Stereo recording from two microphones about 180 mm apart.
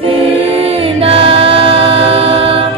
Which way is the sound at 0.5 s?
30° right (ahead or behind).